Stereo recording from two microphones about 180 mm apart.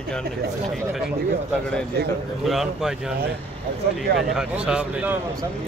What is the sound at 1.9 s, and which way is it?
Speech, 65° right (ahead or behind).